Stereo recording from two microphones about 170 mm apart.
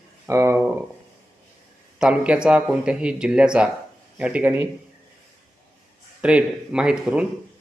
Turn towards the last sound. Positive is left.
turn(degrees=-5)  # may be behind; listen again after turning